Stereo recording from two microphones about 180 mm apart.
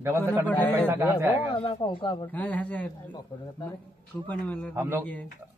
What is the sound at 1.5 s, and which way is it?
Speech, 25° left (ahead or behind).